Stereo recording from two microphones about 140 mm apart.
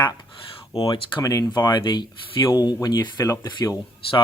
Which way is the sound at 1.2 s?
25° left (ahead or behind).